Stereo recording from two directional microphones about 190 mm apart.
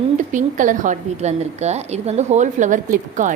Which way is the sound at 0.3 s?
40° right (ahead or behind).